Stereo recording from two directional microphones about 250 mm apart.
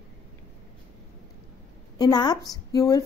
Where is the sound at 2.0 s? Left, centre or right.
Centre.